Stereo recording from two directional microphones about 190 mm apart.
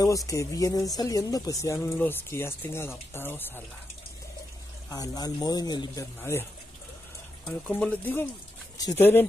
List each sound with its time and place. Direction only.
0.3 s speech: 15° left (ahead or behind)
4.8 s speech: 20° left (ahead or behind)
7.4 s speech: 5° left (ahead or behind)